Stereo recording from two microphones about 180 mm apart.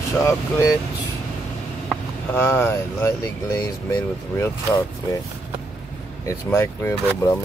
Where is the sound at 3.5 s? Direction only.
15° left (ahead or behind).